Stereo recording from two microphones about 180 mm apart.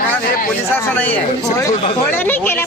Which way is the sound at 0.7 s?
10° left (ahead or behind).